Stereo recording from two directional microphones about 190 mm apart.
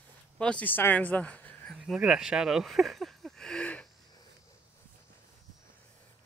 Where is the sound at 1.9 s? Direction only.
5° right (ahead or behind).